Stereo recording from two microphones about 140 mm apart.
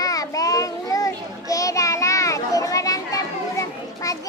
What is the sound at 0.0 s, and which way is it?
Child singing, 25° left (ahead or behind).